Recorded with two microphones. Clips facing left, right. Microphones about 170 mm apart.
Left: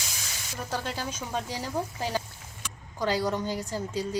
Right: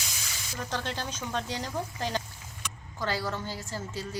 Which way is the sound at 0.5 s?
10° left (ahead or behind).